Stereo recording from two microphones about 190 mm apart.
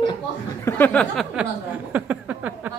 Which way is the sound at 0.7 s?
10° left (ahead or behind).